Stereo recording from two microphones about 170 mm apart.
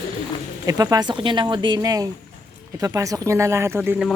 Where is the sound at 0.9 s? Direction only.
25° right (ahead or behind).